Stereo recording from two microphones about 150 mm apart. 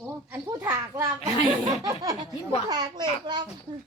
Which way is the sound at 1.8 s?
25° right (ahead or behind).